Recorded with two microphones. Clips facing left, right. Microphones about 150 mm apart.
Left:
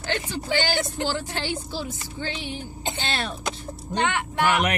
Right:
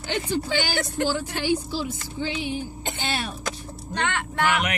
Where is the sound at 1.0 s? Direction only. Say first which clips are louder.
Right 3 dB; 15° right (ahead or behind).